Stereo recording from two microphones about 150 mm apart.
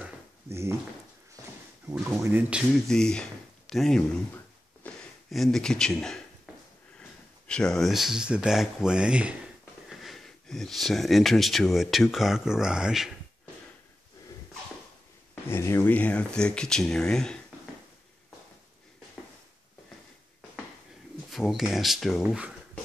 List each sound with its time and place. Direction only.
0.5 s a sound: 20° right (ahead or behind)
1.9 s speech: 20° right (ahead or behind)
2.9 s speech: 5° left (ahead or behind)
4.8 s a sound: 10° left (ahead or behind)
5.3 s speech: centre (ahead or behind)
15.4 s speech: 15° left (ahead or behind)
21.3 s speech: centre (ahead or behind)